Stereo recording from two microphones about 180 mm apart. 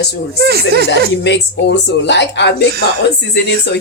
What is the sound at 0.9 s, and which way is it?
Speech, 80° left.